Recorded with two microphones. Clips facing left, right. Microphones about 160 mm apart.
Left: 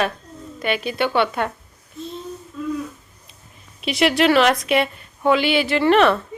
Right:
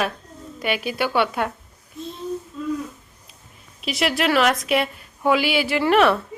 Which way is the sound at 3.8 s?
Centre (ahead or behind).